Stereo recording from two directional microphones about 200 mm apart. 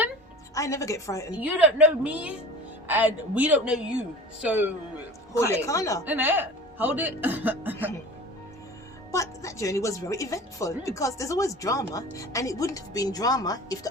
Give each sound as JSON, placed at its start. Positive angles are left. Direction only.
{"t": 0.5, "sound": "speech", "side_deg": 15}
{"t": 1.4, "sound": "a woman's voice", "side_deg": -5}
{"t": 5.4, "sound": "speech", "side_deg": 15}
{"t": 6.1, "sound": "speech", "side_deg": -10}
{"t": 9.1, "sound": "speech", "side_deg": 15}